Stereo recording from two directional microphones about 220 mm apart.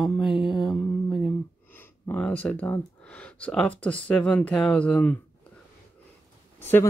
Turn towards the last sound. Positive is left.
turn(degrees=10)  # may be behind; listen again after turning